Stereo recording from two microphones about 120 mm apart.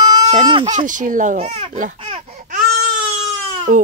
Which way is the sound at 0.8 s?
90° right.